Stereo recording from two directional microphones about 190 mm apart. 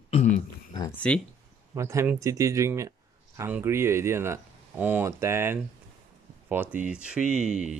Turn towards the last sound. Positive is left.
turn(degrees=-5)  # may be behind; listen again after turning